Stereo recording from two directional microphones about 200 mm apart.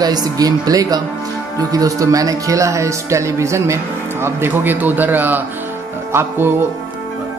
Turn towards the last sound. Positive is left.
turn(degrees=-10)  # may be behind; listen again after turning